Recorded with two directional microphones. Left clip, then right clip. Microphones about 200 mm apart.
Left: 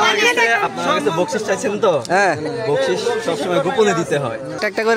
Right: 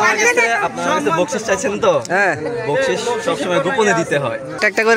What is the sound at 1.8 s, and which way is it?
Speech, 5° left (ahead or behind).